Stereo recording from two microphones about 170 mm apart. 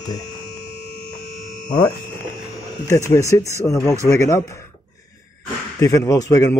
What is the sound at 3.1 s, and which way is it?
A man's voice, 20° left (ahead or behind).